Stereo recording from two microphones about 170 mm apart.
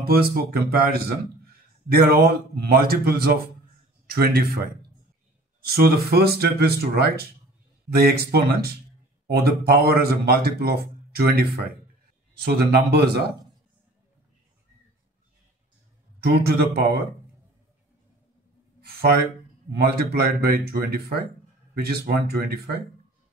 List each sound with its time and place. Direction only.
0.0 s a man's voice: 65° right (ahead or behind)
5.7 s a man's voice: 65° right (ahead or behind)
16.2 s speech: 70° right (ahead or behind)
18.8 s a sound: 65° right (ahead or behind)
19.8 s speech: 65° right (ahead or behind)